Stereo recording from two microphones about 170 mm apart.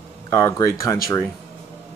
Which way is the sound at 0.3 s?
15° left (ahead or behind).